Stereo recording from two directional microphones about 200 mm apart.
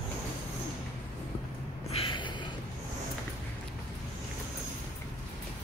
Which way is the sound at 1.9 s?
25° left (ahead or behind).